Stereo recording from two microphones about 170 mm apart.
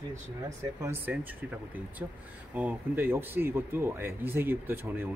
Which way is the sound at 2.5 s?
10° right (ahead or behind).